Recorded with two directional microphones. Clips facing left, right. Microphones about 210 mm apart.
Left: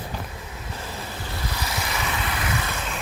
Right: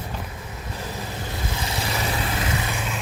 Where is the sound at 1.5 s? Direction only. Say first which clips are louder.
Right 2 dB; 25° right (ahead or behind).